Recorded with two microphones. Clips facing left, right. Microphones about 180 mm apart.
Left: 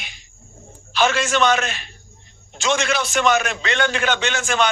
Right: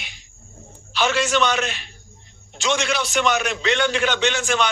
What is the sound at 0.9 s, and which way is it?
A man's voice, 50° left (ahead or behind).